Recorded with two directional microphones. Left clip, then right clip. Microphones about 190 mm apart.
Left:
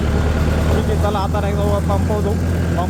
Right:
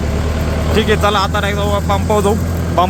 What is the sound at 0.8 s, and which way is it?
Speech, 10° right (ahead or behind).